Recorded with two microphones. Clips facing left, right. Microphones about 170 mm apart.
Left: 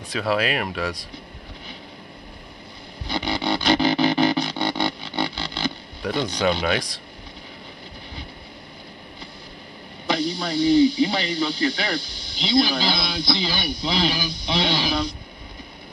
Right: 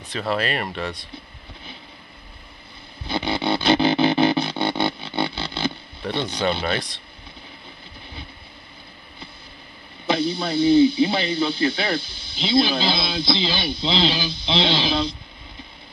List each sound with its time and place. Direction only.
0.2 s speech: 5° left (ahead or behind)
3.1 s music: 25° right (ahead or behind)
6.5 s speech: 5° right (ahead or behind)
10.0 s a sound: 25° right (ahead or behind)
11.0 s a man's voice: 25° right (ahead or behind)